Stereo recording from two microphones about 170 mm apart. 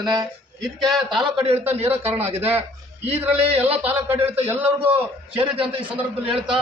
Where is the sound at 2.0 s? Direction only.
35° right (ahead or behind).